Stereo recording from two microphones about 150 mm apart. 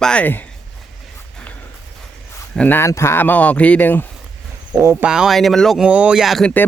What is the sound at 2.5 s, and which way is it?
Speech, 10° left (ahead or behind).